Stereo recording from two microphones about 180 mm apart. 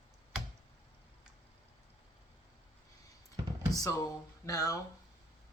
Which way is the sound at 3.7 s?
20° left (ahead or behind).